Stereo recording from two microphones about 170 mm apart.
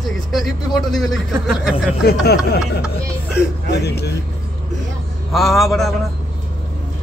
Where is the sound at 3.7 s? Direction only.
75° left (ahead or behind).